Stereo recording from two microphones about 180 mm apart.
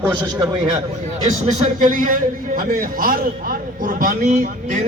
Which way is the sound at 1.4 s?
50° right (ahead or behind).